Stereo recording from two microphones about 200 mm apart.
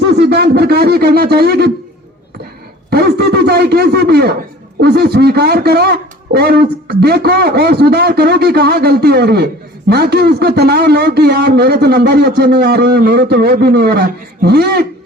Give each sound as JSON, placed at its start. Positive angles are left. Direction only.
{"t": 0.1, "sound": "speech", "side_deg": -55}
{"t": 2.9, "sound": "a sound", "side_deg": -55}
{"t": 4.8, "sound": "speech", "side_deg": -50}